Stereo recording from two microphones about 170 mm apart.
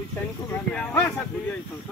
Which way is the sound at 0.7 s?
10° left (ahead or behind).